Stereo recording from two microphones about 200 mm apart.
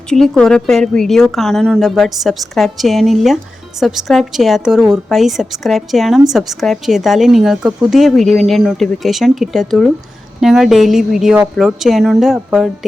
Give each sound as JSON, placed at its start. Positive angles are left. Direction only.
{"t": 0.1, "sound": "speech", "side_deg": 5}